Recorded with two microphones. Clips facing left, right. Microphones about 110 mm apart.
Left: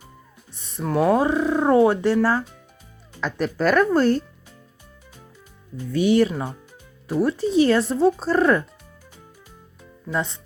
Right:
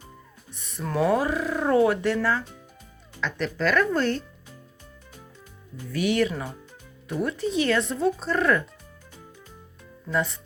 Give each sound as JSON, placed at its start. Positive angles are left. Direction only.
{"t": 0.5, "sound": "music", "side_deg": 30}
{"t": 0.9, "sound": "speech", "side_deg": 10}
{"t": 1.1, "sound": "speech", "side_deg": 25}
{"t": 3.2, "sound": "speech", "side_deg": 40}
{"t": 5.7, "sound": "speech", "side_deg": 30}
{"t": 10.1, "sound": "speech", "side_deg": 25}